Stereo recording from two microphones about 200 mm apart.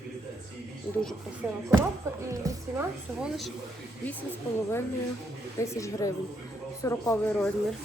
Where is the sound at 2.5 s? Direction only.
15° right (ahead or behind).